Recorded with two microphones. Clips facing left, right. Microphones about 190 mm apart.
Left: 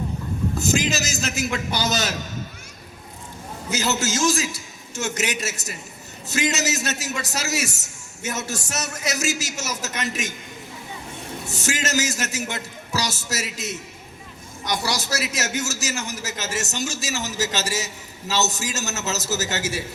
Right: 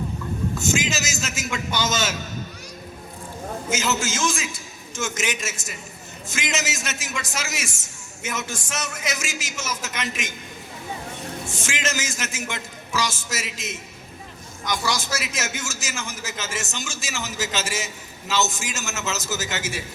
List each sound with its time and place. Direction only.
0.5 s a man's voice: 35° left (ahead or behind)
3.7 s a man's voice: 35° left (ahead or behind)
11.4 s a man's voice: 40° left (ahead or behind)